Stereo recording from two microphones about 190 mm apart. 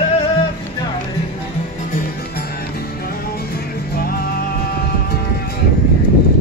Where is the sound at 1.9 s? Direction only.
55° left (ahead or behind).